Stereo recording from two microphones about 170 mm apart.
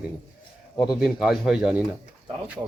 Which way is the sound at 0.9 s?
5° right (ahead or behind).